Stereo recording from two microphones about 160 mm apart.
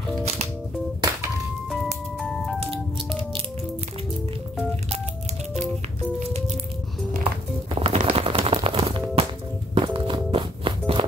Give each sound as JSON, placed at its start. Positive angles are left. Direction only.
{"t": 1.7, "sound": "music", "side_deg": 0}
{"t": 2.6, "sound": "music", "side_deg": -35}
{"t": 7.8, "sound": "music", "side_deg": -40}